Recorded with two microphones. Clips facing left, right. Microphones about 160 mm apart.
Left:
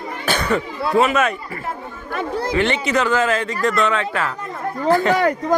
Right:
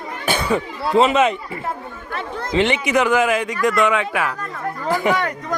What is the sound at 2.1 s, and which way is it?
Chatter, 35° left (ahead or behind).